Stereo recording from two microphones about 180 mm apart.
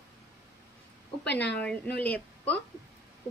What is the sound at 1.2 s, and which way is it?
Speech, 70° left (ahead or behind).